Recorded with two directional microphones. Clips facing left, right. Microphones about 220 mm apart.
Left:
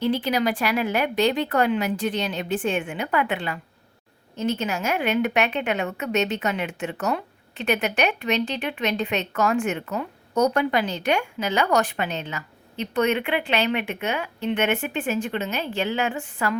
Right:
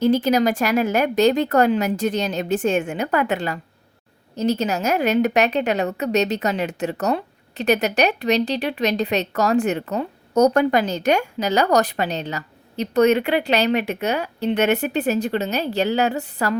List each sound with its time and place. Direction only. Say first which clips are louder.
0.0 s a woman's voice: right 6 dB; 45° right (ahead or behind)